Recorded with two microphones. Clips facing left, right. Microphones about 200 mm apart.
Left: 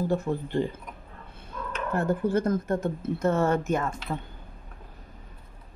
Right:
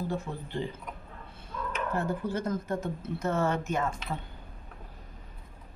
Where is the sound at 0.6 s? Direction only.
45° left (ahead or behind).